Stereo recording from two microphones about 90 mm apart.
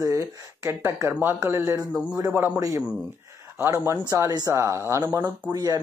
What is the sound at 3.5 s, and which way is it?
Speech, 25° right (ahead or behind).